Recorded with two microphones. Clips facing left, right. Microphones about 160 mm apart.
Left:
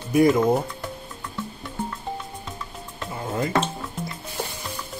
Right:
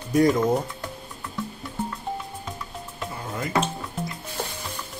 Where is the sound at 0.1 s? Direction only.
10° left (ahead or behind).